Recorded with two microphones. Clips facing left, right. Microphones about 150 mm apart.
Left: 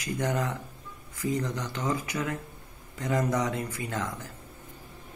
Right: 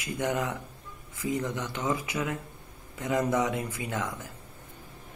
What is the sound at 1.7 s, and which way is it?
Speech, 20° right (ahead or behind).